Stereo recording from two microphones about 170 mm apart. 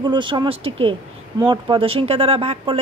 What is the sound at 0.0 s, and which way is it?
Speech, 25° right (ahead or behind).